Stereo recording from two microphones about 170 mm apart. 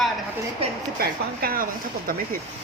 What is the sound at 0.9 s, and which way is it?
Speech, 60° right (ahead or behind).